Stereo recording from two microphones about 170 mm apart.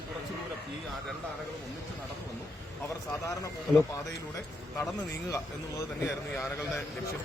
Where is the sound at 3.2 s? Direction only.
20° left (ahead or behind).